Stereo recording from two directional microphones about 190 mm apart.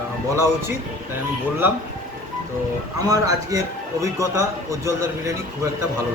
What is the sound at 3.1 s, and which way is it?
Speech, 20° right (ahead or behind).